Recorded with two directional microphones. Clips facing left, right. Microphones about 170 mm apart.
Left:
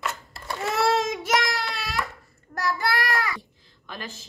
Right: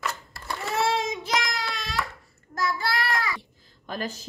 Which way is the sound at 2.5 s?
65° left (ahead or behind).